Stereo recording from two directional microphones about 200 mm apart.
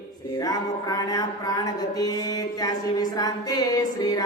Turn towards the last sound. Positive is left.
turn(degrees=20)  # may be behind; listen again after turning